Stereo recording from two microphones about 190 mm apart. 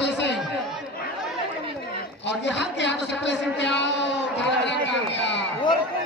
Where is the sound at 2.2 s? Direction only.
70° left (ahead or behind).